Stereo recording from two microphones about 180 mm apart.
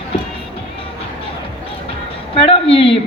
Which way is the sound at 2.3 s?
30° left (ahead or behind).